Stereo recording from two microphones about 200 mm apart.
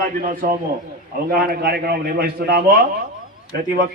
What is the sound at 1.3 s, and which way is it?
A man's voice, 50° right (ahead or behind).